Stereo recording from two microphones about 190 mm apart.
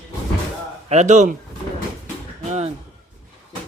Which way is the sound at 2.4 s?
35° right (ahead or behind).